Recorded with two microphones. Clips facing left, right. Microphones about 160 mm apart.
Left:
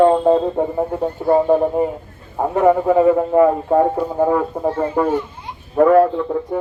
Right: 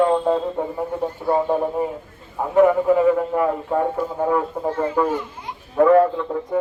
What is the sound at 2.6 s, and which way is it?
A man's voice, 30° left (ahead or behind).